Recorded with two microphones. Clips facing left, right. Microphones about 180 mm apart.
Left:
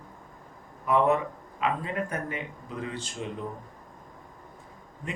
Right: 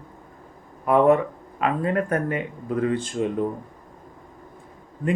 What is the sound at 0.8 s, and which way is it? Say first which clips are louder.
Speech: right 6 dB; 55° right (ahead or behind).